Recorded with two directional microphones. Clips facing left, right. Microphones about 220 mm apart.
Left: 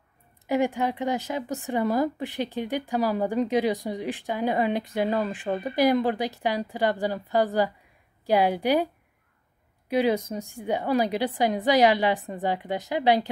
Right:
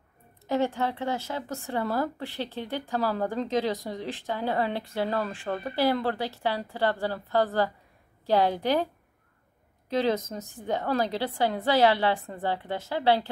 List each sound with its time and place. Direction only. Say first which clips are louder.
0.5 s speech: left 2 dB; 15° left (ahead or behind)
9.8 s speech: left 3 dB; 10° left (ahead or behind)